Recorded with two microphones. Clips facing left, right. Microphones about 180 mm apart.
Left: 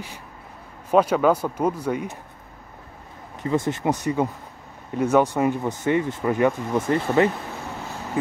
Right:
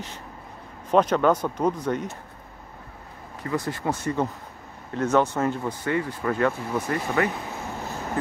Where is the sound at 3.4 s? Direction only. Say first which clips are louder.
Left 5 dB; 20° left (ahead or behind).